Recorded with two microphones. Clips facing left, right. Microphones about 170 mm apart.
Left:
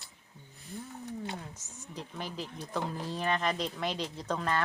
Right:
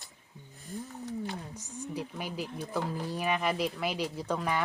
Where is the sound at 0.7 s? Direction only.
45° right (ahead or behind).